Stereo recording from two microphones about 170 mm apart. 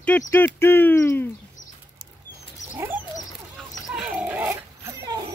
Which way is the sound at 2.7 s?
10° right (ahead or behind).